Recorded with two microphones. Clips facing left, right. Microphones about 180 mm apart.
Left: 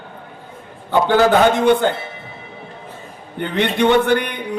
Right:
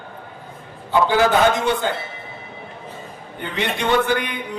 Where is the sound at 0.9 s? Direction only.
60° left (ahead or behind).